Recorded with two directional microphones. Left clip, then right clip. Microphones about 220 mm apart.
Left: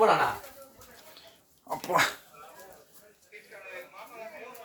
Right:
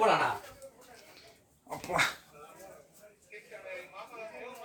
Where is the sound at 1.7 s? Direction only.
20° left (ahead or behind).